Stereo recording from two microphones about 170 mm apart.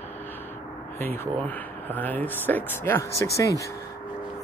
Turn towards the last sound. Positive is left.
turn(degrees=20)  # may be behind; listen again after turning